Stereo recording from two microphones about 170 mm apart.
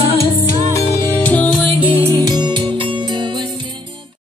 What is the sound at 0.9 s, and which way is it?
Music, 10° left (ahead or behind).